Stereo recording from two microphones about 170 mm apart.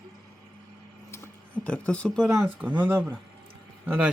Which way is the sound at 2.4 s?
10° right (ahead or behind).